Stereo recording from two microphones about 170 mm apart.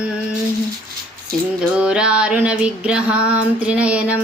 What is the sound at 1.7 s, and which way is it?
Music, 5° right (ahead or behind).